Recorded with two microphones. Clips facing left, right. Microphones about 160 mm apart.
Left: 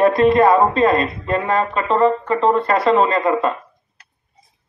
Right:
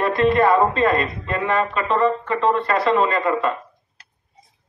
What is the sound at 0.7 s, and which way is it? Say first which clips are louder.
Speech: left 3 dB; 30° left (ahead or behind).